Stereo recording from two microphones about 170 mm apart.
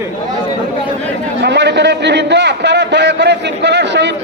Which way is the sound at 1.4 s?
85° right.